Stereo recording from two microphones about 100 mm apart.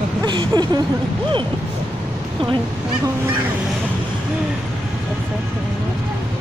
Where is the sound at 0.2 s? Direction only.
50° right (ahead or behind).